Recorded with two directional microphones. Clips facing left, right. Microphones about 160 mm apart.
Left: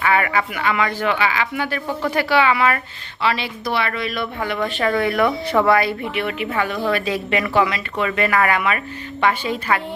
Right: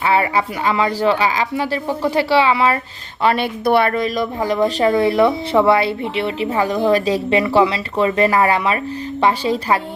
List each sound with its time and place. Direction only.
0.0 s speech: 30° right (ahead or behind)
3.2 s speech: 50° right (ahead or behind)
4.6 s speech: 25° right (ahead or behind)